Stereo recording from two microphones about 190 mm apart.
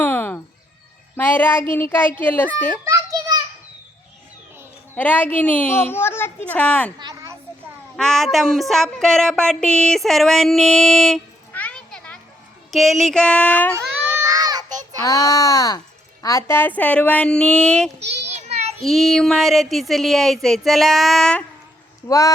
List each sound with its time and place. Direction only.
0.0 s chicken: 10° left (ahead or behind)
1.1 s a woman's voice: 10° left (ahead or behind)
2.8 s a sound: 20° right (ahead or behind)
4.9 s a woman's voice: 10° left (ahead or behind)
7.0 s a sound: 20° right (ahead or behind)
7.9 s speech: centre (ahead or behind)
13.7 s baby cry: 15° right (ahead or behind)
15.0 s a woman's voice: 20° left (ahead or behind)
18.3 s child singing: 35° right (ahead or behind)
18.8 s speech: centre (ahead or behind)
22.0 s speech: 15° left (ahead or behind)